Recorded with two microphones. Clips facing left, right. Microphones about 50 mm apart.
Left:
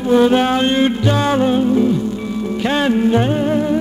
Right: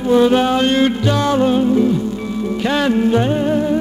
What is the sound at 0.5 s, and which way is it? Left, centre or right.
Mantra, centre.